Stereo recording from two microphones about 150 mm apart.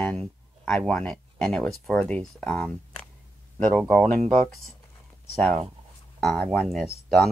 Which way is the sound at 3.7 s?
5° left (ahead or behind).